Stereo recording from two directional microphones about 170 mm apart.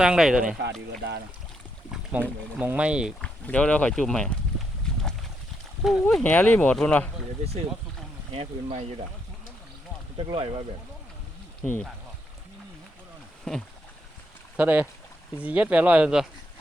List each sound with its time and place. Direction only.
0.0 s speech: 5° right (ahead or behind)
0.6 s speech: 90° right
2.1 s speech: 10° right (ahead or behind)
3.2 s speech: 5° left (ahead or behind)
5.8 s speech: centre (ahead or behind)
8.3 s speech: 35° right (ahead or behind)
10.2 s speech: 30° right (ahead or behind)
11.6 s speech: 5° left (ahead or behind)
13.5 s speech: 5° left (ahead or behind)
14.5 s speech: 10° right (ahead or behind)